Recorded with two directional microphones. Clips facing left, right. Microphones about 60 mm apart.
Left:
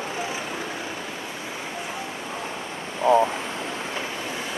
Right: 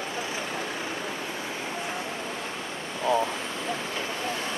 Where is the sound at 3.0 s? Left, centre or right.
Left.